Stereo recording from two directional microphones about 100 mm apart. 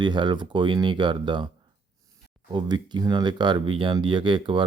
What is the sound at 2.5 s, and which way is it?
Speech, 50° right (ahead or behind).